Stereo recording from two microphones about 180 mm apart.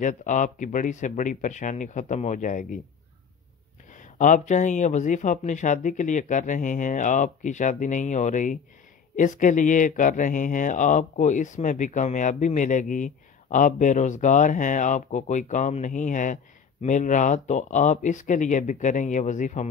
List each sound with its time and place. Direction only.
0.0 s speech: 45° left (ahead or behind)
3.9 s speech: 45° left (ahead or behind)